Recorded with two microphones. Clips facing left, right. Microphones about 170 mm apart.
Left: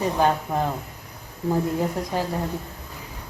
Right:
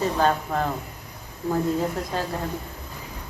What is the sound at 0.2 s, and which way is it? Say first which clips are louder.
Speech: left 2 dB; 15° left (ahead or behind).